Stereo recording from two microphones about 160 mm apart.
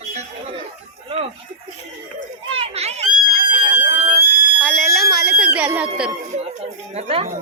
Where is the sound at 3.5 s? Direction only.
45° right (ahead or behind).